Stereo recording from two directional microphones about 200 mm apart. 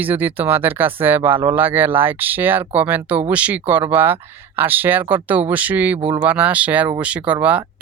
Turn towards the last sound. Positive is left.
turn(degrees=-5)  # may be behind; listen again after turning